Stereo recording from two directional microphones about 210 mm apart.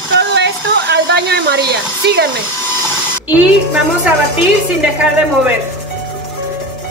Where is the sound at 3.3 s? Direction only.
5° right (ahead or behind).